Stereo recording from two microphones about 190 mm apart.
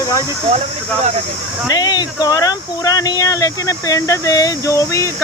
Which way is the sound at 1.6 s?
20° left (ahead or behind).